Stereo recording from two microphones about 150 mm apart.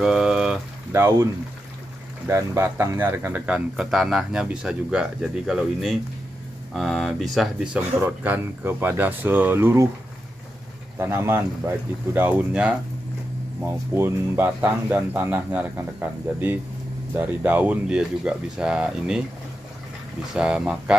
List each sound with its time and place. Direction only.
0.0 s boiling: 5° right (ahead or behind)
0.9 s speech: 20° right (ahead or behind)
11.0 s speech: 15° right (ahead or behind)
20.3 s speech: 5° right (ahead or behind)